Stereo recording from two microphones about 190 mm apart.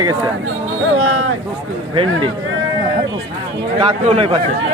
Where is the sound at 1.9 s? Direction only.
30° right (ahead or behind).